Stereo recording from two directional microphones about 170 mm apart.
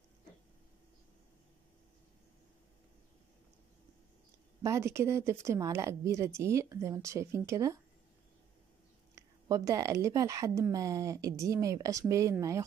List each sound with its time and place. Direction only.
4.6 s speech: 15° right (ahead or behind)
9.1 s speech: 20° right (ahead or behind)